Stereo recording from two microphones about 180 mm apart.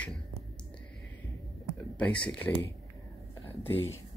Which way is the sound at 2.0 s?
5° left (ahead or behind).